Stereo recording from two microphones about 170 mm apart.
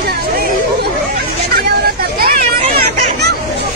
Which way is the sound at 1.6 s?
60° right (ahead or behind).